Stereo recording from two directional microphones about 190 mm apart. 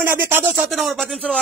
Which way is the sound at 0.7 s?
Centre (ahead or behind).